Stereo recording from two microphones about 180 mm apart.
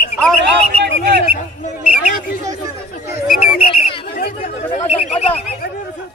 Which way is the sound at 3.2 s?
50° left (ahead or behind).